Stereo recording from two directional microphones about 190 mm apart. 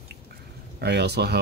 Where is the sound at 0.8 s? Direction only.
60° right (ahead or behind).